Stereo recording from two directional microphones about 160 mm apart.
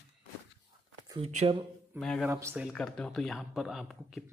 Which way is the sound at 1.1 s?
40° right (ahead or behind).